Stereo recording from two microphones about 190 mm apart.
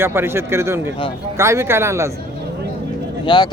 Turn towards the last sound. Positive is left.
turn(degrees=25)  # may be behind; listen again after turning